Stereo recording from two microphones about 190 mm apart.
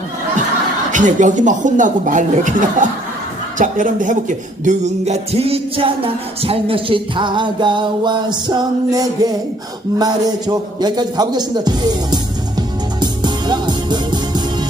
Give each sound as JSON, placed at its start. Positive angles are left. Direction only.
{"t": 0.9, "sound": "speech", "side_deg": -40}
{"t": 3.6, "sound": "music", "side_deg": -45}